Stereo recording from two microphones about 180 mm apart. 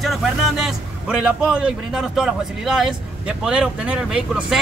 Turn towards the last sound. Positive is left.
turn(degrees=-5)  # may be behind; listen again after turning